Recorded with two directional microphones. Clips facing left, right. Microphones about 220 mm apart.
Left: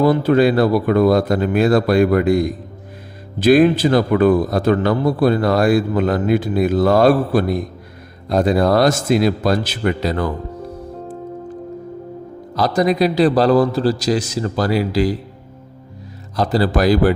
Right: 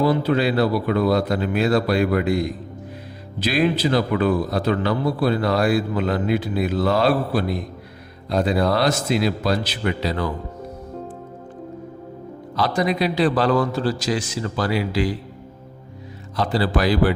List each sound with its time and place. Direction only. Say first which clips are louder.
0.0 s a man's voice: left 5 dB; 50° left (ahead or behind)
12.5 s a man's voice: left 5 dB; 40° left (ahead or behind)
16.3 s a man's voice: left 4 dB; 40° left (ahead or behind)